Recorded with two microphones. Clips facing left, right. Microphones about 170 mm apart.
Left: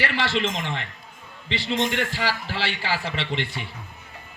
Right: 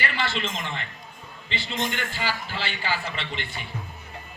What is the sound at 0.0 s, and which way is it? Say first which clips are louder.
A man's voice: left 4 dB; 90° left.